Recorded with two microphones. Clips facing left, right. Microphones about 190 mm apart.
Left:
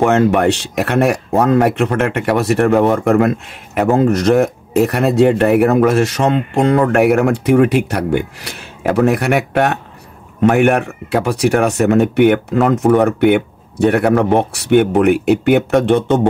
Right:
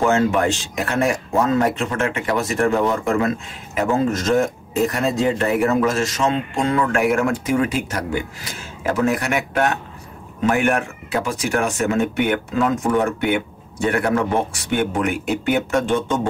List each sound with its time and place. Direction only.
0.0 s speech: 65° left (ahead or behind)